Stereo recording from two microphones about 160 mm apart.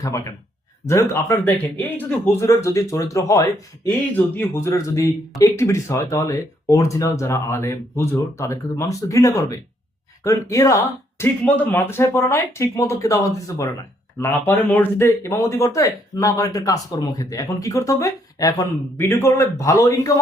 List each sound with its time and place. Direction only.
0.0 s speech: 20° left (ahead or behind)